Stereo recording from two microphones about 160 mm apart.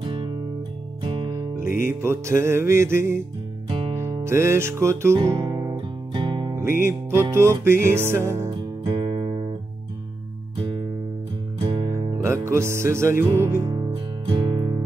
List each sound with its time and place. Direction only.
0.0 s music: 30° right (ahead or behind)
1.8 s music: 15° right (ahead or behind)
6.5 s music: 15° right (ahead or behind)
8.8 s music: 30° right (ahead or behind)
11.6 s music: 25° right (ahead or behind)
12.2 s music: 15° right (ahead or behind)
13.7 s music: 30° right (ahead or behind)